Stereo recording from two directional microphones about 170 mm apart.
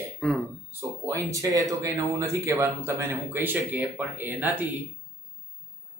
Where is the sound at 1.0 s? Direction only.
15° right (ahead or behind).